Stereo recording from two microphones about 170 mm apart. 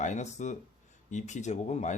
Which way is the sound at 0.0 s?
45° left (ahead or behind).